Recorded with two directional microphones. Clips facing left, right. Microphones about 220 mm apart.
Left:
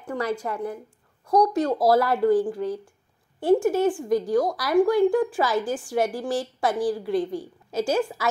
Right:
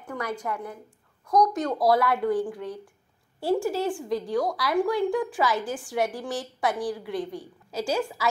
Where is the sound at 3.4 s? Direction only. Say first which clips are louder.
Left 5 dB; 20° left (ahead or behind).